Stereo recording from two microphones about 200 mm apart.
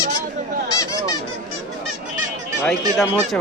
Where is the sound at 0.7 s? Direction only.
15° left (ahead or behind).